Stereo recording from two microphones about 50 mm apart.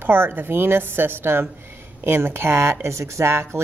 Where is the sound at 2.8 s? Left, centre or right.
Right.